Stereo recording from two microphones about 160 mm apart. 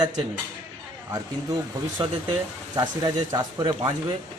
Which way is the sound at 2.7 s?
25° right (ahead or behind).